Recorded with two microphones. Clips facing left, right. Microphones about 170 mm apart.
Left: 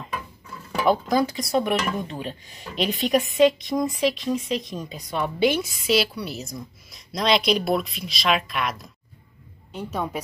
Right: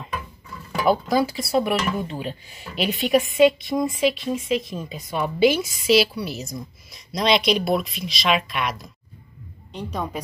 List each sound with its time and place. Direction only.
0.8 s speech: 5° right (ahead or behind)